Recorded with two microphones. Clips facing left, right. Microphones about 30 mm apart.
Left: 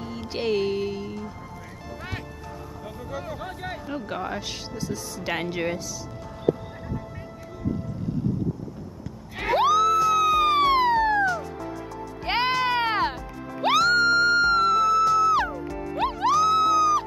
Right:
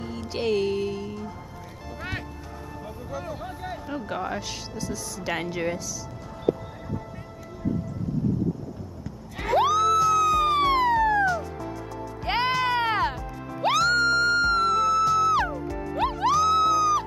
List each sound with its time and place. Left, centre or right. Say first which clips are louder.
0.4 s music: even; centre
2.0 s music: right 3 dB; centre
2.8 s speech: even; centre
3.4 s speech: left 1 dB; left
3.8 s speech: right 1 dB; centre
9.7 s music: left 2 dB; centre
10.7 s police car: left 1 dB; left
12.3 s music: left 1 dB; centre